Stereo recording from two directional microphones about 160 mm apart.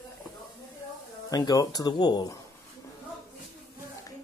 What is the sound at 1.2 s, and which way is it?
Speech, 25° left (ahead or behind).